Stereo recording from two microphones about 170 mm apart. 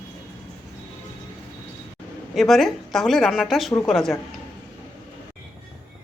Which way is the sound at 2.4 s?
Centre (ahead or behind).